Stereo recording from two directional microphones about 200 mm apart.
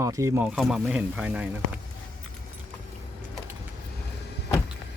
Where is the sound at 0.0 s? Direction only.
15° right (ahead or behind).